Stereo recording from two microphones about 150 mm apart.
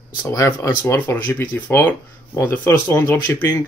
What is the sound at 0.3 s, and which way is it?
Speech, 20° left (ahead or behind).